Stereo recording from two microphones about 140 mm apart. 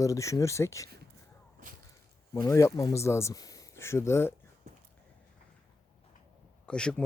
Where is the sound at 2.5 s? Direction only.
20° left (ahead or behind).